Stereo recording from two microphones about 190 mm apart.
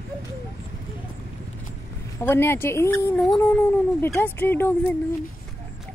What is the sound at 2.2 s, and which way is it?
Speech, 10° left (ahead or behind).